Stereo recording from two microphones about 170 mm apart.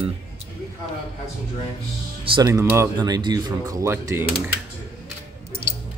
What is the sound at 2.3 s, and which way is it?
Speech, 20° right (ahead or behind).